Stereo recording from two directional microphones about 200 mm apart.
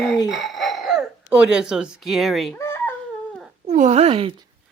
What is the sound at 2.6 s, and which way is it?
Baby cry, 10° left (ahead or behind).